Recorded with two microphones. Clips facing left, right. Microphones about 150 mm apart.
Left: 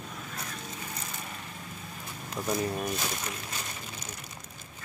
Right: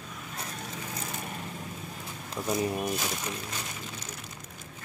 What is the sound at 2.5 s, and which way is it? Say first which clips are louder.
Speech: right 2 dB; 15° right (ahead or behind).